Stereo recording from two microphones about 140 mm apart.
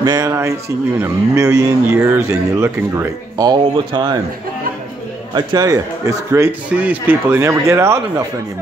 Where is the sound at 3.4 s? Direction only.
35° right (ahead or behind).